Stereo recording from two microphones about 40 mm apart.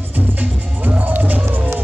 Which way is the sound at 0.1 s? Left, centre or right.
Right.